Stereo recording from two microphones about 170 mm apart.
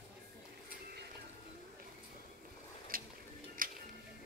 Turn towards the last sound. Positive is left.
turn(degrees=-55)  # may be behind; listen again after turning